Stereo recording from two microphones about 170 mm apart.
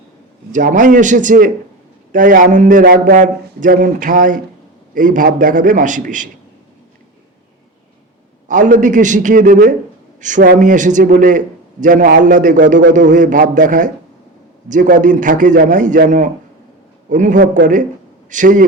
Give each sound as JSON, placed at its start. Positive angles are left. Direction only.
{"t": 0.5, "sound": "a man's voice", "side_deg": -50}
{"t": 8.4, "sound": "a man's voice", "side_deg": -50}